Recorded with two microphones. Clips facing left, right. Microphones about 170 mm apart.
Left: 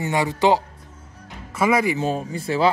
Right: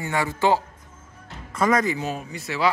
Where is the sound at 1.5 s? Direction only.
10° left (ahead or behind).